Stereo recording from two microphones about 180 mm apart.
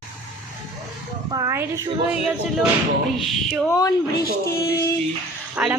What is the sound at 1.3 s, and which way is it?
Speech, 15° right (ahead or behind).